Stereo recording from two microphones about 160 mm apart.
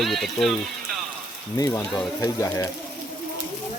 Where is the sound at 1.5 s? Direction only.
20° left (ahead or behind).